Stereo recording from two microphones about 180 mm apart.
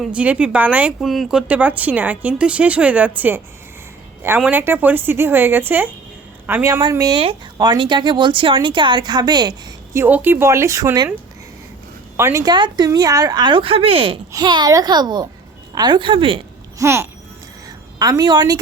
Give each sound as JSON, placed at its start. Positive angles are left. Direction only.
{"t": 0.0, "sound": "a woman's voice", "side_deg": -5}
{"t": 12.1, "sound": "speech", "side_deg": -15}
{"t": 16.7, "sound": "a child's voice", "side_deg": -15}